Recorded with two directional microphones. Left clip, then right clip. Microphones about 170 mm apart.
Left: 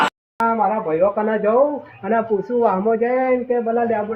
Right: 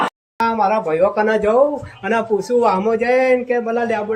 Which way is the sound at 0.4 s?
40° right (ahead or behind).